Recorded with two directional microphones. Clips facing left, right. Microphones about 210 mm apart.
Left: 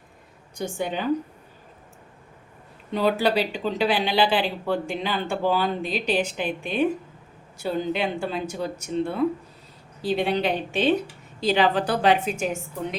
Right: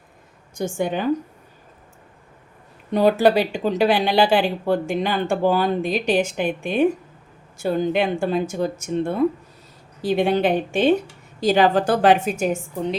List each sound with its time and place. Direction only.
0.5 s speech: 50° right (ahead or behind)
2.9 s speech: 45° right (ahead or behind)